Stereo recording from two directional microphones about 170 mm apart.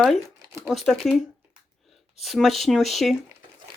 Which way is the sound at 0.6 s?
Centre (ahead or behind).